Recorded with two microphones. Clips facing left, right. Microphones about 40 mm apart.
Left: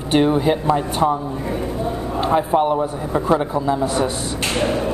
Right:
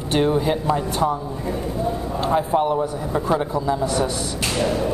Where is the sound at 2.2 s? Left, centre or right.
Centre.